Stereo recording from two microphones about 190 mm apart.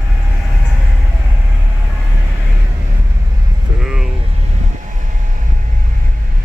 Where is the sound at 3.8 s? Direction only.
5° right (ahead or behind).